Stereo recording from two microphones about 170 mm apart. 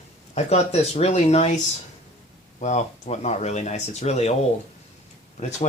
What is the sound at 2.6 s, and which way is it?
Speech, 40° left (ahead or behind).